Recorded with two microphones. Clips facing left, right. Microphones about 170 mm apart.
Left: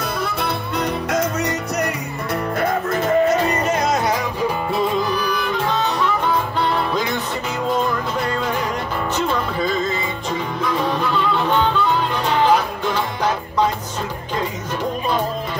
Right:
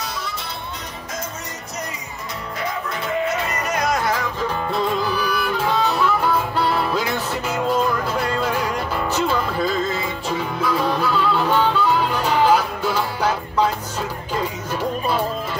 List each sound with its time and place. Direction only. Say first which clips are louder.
0.0 s music: left 7 dB; 55° left (ahead or behind)
2.6 s music: left 5 dB; 50° left (ahead or behind); by 4.5 s 20° left (ahead or behind)
4.7 s music: even; centre (ahead or behind)